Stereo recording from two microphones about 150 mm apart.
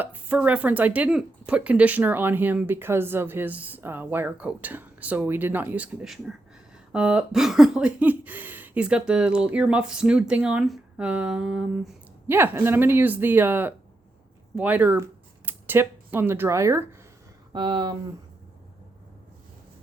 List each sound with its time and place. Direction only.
0.0 s speech: 10° right (ahead or behind)
17.5 s speech: 30° right (ahead or behind)